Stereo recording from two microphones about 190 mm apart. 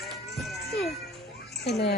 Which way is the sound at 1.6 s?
60° left (ahead or behind).